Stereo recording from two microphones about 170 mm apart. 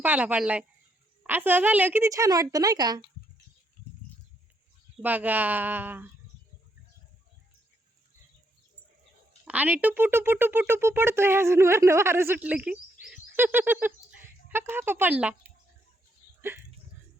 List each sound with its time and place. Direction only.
0.0 s speech: 10° right (ahead or behind)
5.0 s speech: 10° right (ahead or behind)
9.5 s speech: 10° right (ahead or behind)